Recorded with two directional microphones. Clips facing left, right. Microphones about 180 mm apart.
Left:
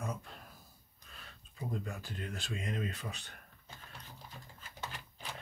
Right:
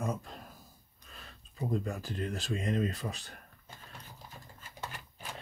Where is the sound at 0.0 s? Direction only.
40° right (ahead or behind).